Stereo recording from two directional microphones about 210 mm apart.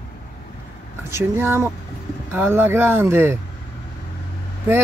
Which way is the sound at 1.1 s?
10° right (ahead or behind).